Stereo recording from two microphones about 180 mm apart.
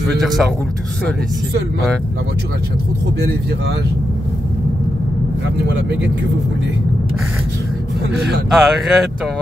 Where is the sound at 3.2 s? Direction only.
65° right (ahead or behind).